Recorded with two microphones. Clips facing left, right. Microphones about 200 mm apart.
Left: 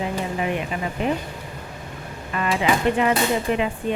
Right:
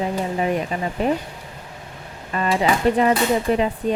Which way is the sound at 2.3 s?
35° right (ahead or behind).